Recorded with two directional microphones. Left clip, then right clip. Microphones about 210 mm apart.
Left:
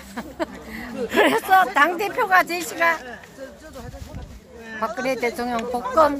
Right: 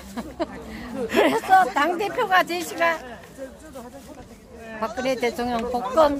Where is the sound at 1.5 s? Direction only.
25° left (ahead or behind).